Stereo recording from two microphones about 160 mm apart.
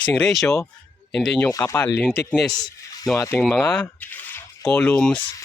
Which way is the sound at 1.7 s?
20° left (ahead or behind).